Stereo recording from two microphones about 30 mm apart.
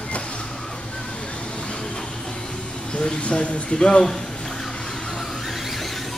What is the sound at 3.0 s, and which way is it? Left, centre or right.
Speech, left.